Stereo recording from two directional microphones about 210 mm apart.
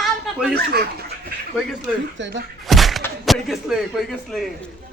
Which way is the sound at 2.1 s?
60° right (ahead or behind).